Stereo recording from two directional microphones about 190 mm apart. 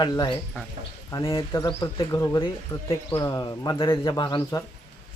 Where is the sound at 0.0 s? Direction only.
20° left (ahead or behind).